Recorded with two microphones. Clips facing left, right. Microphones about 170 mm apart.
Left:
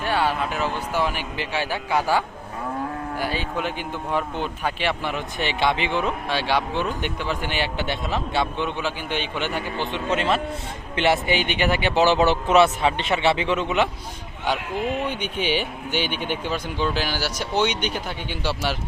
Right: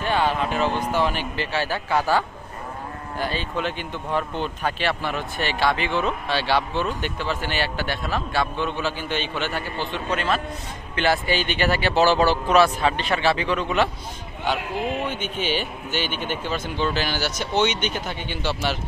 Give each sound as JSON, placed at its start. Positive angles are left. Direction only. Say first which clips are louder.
{"t": 0.0, "sound": "speech", "louder": "right 1 dB", "side_deg": 10}
{"t": 15.0, "sound": "speech", "louder": "left 1 dB", "side_deg": 15}